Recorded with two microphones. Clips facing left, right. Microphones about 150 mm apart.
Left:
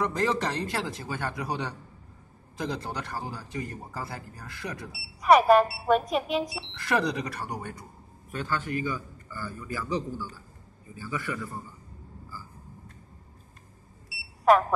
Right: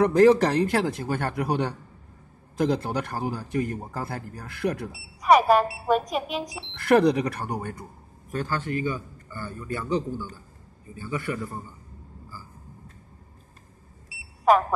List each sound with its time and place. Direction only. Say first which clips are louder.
0.0 s a man's voice: right 10 dB; 55° right (ahead or behind)
5.2 s speech: even; centre (ahead or behind)
6.8 s a man's voice: right 8 dB; 55° right (ahead or behind)
8.3 s a man's voice: right 3 dB; 40° right (ahead or behind)